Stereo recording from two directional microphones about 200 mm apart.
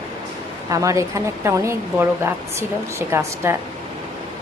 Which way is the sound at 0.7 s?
15° right (ahead or behind).